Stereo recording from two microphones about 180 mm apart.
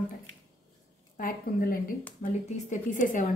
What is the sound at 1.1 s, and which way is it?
A woman's voice, 50° left (ahead or behind).